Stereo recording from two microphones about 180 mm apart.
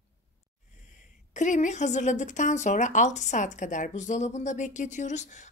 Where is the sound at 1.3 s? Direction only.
45° left (ahead or behind).